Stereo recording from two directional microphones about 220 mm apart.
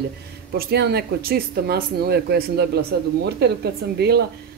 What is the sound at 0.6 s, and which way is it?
Speech, 50° right (ahead or behind).